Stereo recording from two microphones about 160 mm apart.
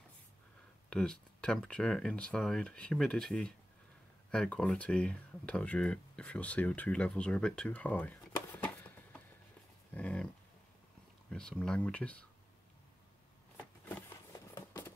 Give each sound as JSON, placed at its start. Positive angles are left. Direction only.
{"t": 0.8, "sound": "speech", "side_deg": 5}
{"t": 9.9, "sound": "dog", "side_deg": 10}
{"t": 11.2, "sound": "speech", "side_deg": 5}
{"t": 13.6, "sound": "a sound", "side_deg": 15}